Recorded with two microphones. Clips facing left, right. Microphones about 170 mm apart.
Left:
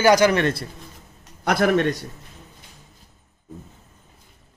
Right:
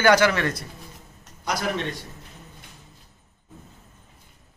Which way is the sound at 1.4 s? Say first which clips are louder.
Left 8 dB; 55° left (ahead or behind).